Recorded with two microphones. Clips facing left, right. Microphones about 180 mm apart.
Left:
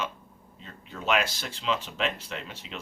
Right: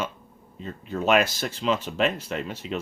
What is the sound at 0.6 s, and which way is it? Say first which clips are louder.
Speech: right 6 dB; 45° right (ahead or behind).